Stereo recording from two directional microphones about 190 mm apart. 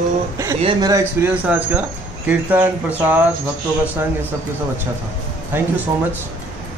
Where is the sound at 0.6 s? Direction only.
25° right (ahead or behind); by 3.3 s 10° right (ahead or behind).